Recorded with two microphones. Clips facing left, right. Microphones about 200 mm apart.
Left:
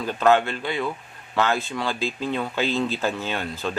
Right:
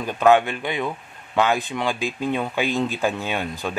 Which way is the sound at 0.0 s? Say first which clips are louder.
Right 2 dB; 15° right (ahead or behind).